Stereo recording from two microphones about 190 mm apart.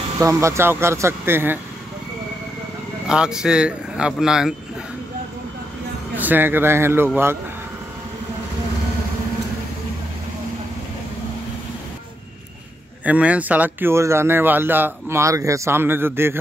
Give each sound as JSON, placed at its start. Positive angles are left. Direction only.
{"t": 0.2, "sound": "speech", "side_deg": -15}
{"t": 3.1, "sound": "speech", "side_deg": -5}
{"t": 6.1, "sound": "a man's voice", "side_deg": -10}
{"t": 13.0, "sound": "speech", "side_deg": -5}